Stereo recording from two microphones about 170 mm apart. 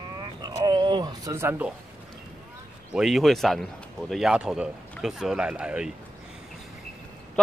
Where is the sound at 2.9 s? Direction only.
Centre (ahead or behind).